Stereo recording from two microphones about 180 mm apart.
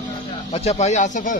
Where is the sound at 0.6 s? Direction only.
35° left (ahead or behind).